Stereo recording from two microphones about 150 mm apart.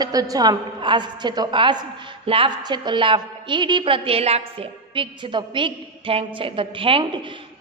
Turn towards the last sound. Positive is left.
turn(degrees=-35)  # may be behind; listen again after turning